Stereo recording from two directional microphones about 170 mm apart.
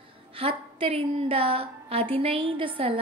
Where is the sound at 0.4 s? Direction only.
35° right (ahead or behind).